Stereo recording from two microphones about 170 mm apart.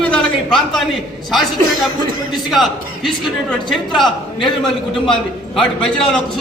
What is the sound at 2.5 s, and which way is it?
A man's voice, centre (ahead or behind).